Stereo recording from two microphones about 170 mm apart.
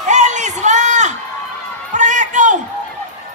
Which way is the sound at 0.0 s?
45° right (ahead or behind).